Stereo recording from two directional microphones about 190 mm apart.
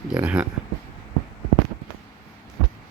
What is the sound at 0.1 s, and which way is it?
Speech, 5° right (ahead or behind).